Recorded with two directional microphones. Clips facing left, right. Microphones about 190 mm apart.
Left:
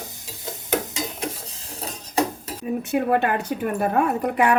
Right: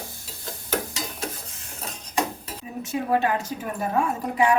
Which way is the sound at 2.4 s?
55° left (ahead or behind).